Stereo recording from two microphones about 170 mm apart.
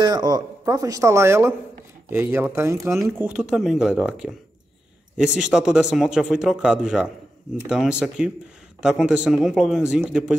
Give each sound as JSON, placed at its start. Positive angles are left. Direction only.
{"t": 0.0, "sound": "a man's voice", "side_deg": -25}